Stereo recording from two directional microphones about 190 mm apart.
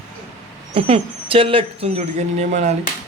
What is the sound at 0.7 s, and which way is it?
Speech, 30° right (ahead or behind).